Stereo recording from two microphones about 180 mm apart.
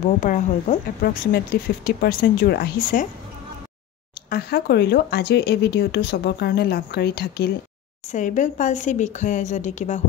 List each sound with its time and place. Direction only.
0.2 s speech: 50° left (ahead or behind)
4.3 s speech: 60° left (ahead or behind)
8.1 s speech: 45° left (ahead or behind)